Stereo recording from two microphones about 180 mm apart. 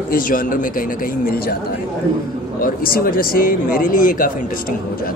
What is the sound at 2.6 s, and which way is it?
Speech, 55° left (ahead or behind).